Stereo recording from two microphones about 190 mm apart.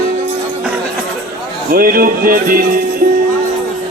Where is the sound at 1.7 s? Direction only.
50° right (ahead or behind).